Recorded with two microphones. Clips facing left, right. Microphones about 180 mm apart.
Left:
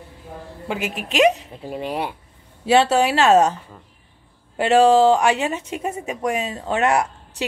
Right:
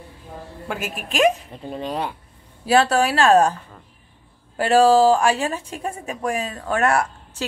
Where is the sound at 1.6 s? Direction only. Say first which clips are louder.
Left 1 dB; 10° left (ahead or behind).